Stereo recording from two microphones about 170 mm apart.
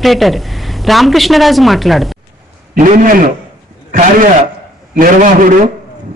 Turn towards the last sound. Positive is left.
turn(degrees=-50)  # may be behind; listen again after turning